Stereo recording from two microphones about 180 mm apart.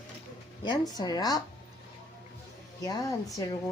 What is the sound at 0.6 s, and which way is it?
Speech, 25° left (ahead or behind).